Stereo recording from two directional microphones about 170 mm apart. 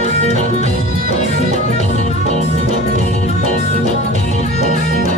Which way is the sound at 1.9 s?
45° right (ahead or behind).